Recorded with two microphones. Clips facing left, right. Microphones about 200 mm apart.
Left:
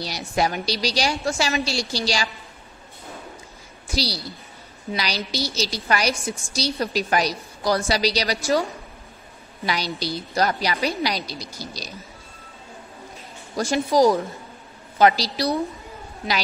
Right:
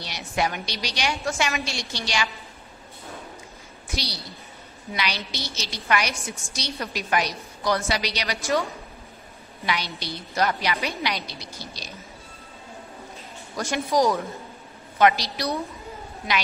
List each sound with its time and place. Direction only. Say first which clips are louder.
0.0 s a woman's voice: left 3 dB; 35° left (ahead or behind)
3.9 s a woman's voice: left 6 dB; 35° left (ahead or behind)
9.7 s a woman's voice: left 3 dB; 35° left (ahead or behind)
13.6 s a woman's voice: left 4 dB; 30° left (ahead or behind)